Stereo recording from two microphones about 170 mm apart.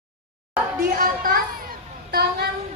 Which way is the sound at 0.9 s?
55° right (ahead or behind).